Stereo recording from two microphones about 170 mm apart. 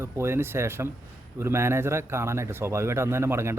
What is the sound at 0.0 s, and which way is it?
A man's voice, 15° right (ahead or behind).